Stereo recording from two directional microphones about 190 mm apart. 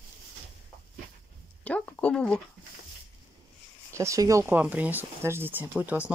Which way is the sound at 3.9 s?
15° right (ahead or behind).